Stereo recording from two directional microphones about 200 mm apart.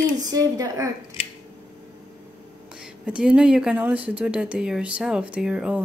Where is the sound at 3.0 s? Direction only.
5° right (ahead or behind).